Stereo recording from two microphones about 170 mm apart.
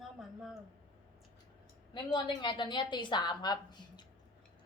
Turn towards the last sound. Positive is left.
turn(degrees=25)  # may be behind; listen again after turning